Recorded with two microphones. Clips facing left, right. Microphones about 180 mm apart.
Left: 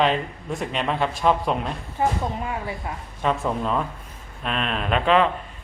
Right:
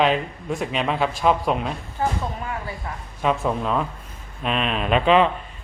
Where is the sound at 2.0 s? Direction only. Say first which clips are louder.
Left 2 dB; 15° left (ahead or behind).